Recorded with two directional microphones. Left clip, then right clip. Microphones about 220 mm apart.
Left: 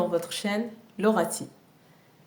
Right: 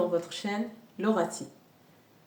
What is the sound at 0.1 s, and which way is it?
Speech, 45° left (ahead or behind).